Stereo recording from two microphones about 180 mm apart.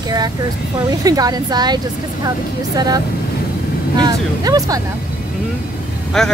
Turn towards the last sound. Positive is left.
turn(degrees=0)  # may be behind; listen again after turning